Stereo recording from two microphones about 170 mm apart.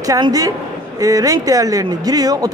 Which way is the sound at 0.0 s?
20° right (ahead or behind).